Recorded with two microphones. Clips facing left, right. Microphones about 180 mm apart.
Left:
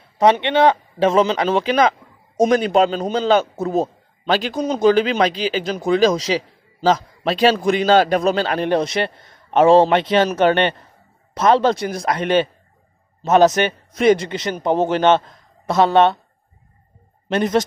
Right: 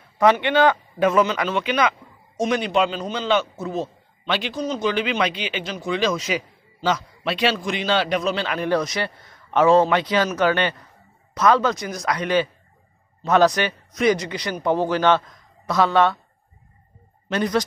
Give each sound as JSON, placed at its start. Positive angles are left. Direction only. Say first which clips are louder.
{"t": 0.2, "sound": "a man's voice", "louder": "left 2 dB", "side_deg": 25}
{"t": 8.6, "sound": "speech", "louder": "left 3 dB", "side_deg": 25}
{"t": 13.2, "sound": "speech", "louder": "left 4 dB", "side_deg": 20}
{"t": 17.3, "sound": "speech", "louder": "left 4 dB", "side_deg": 25}